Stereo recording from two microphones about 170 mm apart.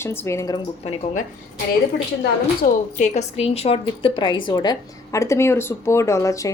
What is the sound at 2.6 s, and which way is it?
A woman's voice, 45° left (ahead or behind).